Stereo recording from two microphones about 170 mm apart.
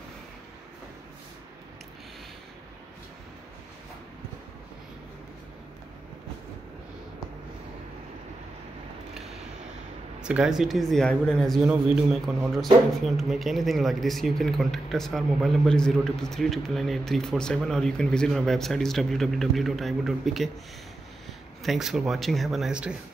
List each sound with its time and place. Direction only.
10.2 s speech: 5° right (ahead or behind)